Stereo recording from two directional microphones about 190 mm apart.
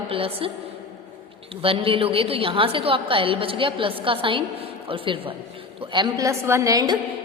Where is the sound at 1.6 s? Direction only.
30° right (ahead or behind).